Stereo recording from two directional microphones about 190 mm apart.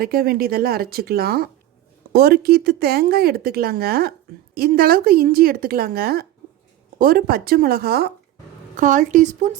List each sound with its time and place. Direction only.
0.0 s a woman's voice: 50° right (ahead or behind)
8.7 s speech: 40° right (ahead or behind)